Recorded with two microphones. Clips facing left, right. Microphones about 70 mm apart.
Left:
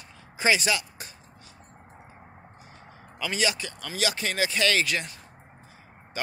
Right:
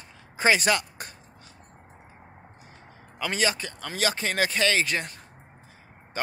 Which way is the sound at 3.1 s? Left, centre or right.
Right.